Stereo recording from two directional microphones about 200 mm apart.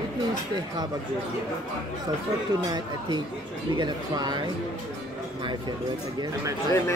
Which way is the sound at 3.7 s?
20° right (ahead or behind).